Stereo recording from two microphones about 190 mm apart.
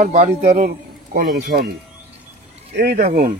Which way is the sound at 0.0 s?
35° right (ahead or behind).